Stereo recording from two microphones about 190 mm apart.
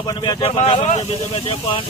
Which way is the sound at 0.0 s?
20° left (ahead or behind).